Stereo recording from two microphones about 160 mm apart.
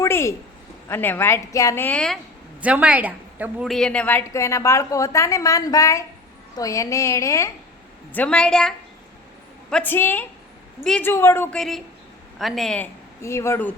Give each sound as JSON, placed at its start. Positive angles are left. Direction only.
{"t": 0.0, "sound": "a sound", "side_deg": 15}
{"t": 0.9, "sound": "a woman's voice", "side_deg": 15}
{"t": 2.6, "sound": "a woman's voice", "side_deg": -10}
{"t": 3.7, "sound": "a woman's voice", "side_deg": 5}
{"t": 8.1, "sound": "a woman's voice", "side_deg": 10}
{"t": 11.5, "sound": "speech", "side_deg": 0}